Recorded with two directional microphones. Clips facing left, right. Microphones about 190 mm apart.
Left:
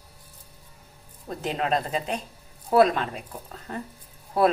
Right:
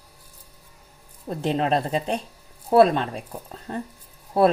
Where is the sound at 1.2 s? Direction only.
30° right (ahead or behind).